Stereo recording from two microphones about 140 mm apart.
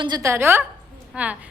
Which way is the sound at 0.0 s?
25° right (ahead or behind).